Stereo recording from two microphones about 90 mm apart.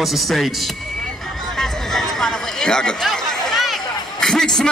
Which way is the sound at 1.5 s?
5° left (ahead or behind).